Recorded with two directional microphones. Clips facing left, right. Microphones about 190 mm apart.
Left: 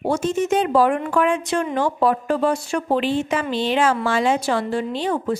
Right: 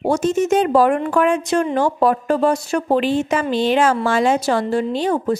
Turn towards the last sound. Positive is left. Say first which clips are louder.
# right 4 dB
turn(degrees=-40)  # may be behind; listen again after turning